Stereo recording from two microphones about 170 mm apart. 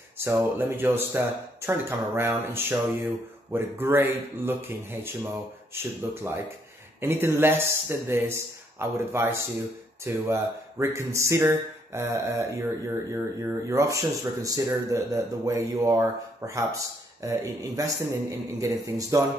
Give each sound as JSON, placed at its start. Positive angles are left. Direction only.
{"t": 0.2, "sound": "speech", "side_deg": -15}